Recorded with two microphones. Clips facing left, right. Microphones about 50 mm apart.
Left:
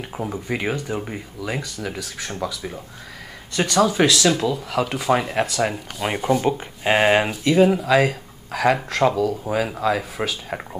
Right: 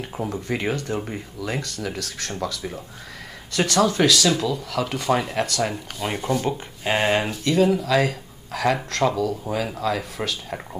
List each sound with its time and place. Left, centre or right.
0.0 s speech: centre